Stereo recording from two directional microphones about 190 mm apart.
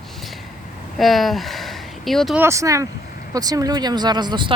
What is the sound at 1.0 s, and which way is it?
Speech, centre (ahead or behind).